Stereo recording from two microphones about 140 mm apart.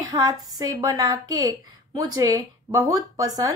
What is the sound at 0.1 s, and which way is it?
A woman's voice, 25° right (ahead or behind).